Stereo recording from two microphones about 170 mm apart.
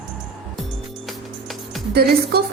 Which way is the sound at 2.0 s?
65° right (ahead or behind).